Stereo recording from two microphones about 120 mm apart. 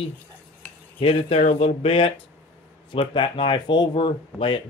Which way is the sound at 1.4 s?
60° left (ahead or behind).